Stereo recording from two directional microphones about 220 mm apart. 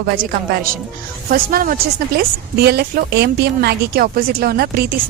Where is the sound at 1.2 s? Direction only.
40° right (ahead or behind).